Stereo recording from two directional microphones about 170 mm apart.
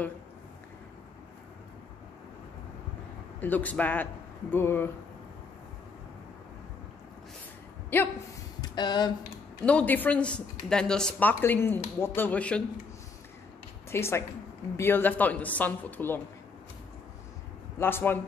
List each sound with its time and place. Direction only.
3.3 s speech: 10° left (ahead or behind)
7.9 s speech: 10° left (ahead or behind)
8.5 s speech: 25° left (ahead or behind)
9.7 s speech: 10° left (ahead or behind)
13.8 s a woman's voice: 15° left (ahead or behind)
17.7 s speech: 15° left (ahead or behind)